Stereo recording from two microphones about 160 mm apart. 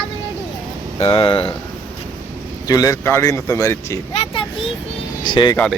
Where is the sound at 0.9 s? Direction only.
35° left (ahead or behind).